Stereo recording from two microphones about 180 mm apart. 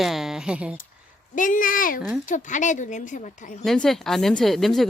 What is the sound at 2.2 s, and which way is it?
Speech, 45° left (ahead or behind).